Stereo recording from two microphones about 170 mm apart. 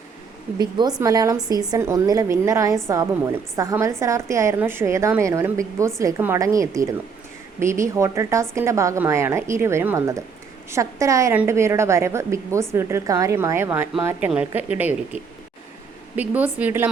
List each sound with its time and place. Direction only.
0.6 s a woman's voice: 25° right (ahead or behind)